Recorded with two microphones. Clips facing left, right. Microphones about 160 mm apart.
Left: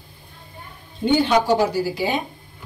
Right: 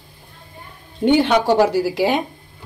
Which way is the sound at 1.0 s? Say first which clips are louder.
Right 3 dB; 70° right (ahead or behind).